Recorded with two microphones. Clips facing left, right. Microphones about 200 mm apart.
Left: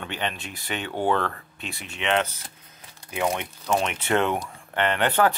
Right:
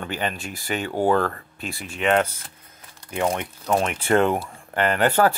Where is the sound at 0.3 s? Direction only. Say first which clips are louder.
Right 4 dB; 40° right (ahead or behind).